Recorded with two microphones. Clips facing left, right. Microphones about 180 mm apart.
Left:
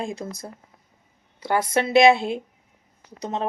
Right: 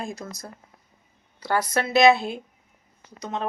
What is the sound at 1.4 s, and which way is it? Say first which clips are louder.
Speech: left 2 dB; 25° left (ahead or behind).